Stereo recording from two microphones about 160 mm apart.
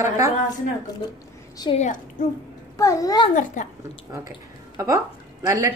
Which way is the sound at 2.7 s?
20° left (ahead or behind).